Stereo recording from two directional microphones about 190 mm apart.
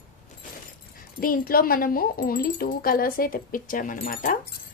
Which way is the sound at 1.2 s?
50° left (ahead or behind).